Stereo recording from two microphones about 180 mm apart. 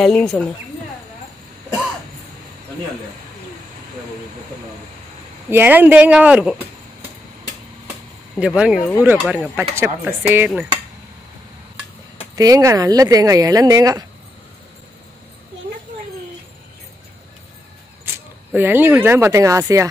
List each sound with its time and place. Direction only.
0.0 s speech: 5° left (ahead or behind)
5.5 s speech: 10° right (ahead or behind)
8.4 s speech: 5° right (ahead or behind)
12.4 s speech: 20° right (ahead or behind)
18.5 s speech: 10° right (ahead or behind)